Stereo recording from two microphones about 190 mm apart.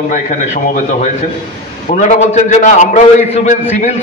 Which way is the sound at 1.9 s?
40° left (ahead or behind).